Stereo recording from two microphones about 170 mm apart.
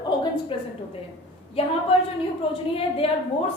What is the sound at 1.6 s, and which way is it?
A woman's voice, 35° left (ahead or behind).